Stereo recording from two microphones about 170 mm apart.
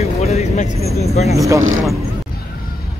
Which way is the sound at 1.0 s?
40° left (ahead or behind).